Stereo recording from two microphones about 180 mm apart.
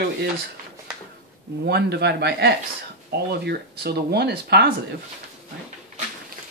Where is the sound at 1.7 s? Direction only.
65° right (ahead or behind).